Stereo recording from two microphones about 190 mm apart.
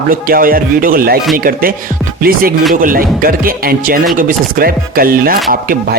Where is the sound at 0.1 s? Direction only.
50° right (ahead or behind).